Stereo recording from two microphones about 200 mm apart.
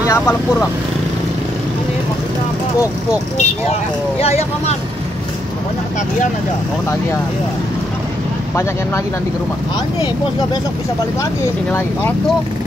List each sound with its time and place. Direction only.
0.0 s speech: 10° left (ahead or behind)
4.2 s speech: 30° left (ahead or behind)